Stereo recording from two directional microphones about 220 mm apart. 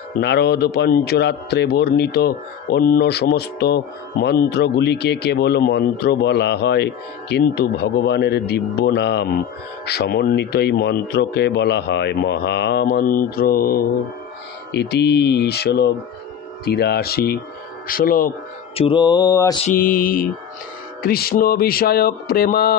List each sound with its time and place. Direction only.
0.2 s a man's voice: 50° left (ahead or behind)
17.8 s mantra: 40° left (ahead or behind)
18.8 s mantra: 20° left (ahead or behind)
19.6 s mantra: 40° left (ahead or behind)
21.0 s a man's voice: 45° left (ahead or behind)